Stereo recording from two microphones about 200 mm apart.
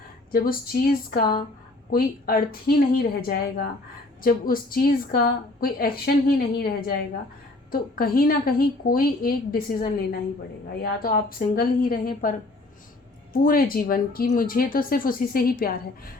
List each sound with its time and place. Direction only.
0.3 s a woman's voice: 50° left (ahead or behind)
1.2 s a woman's voice: 25° left (ahead or behind)
1.9 s a woman's voice: 45° left (ahead or behind)
10.8 s a woman's voice: 45° left (ahead or behind)
13.4 s a woman's voice: 45° left (ahead or behind)